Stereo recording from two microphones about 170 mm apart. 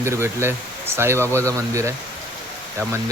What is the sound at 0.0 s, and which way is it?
Speech, 15° right (ahead or behind).